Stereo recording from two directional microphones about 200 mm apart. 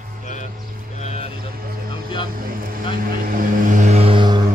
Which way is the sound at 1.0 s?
30° left (ahead or behind).